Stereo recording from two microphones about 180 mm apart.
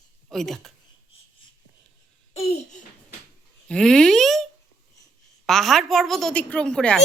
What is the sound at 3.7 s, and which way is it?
Speech, 5° left (ahead or behind).